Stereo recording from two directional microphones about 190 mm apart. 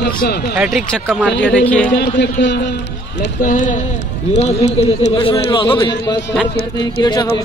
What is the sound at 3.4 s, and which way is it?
Speech, 45° left (ahead or behind).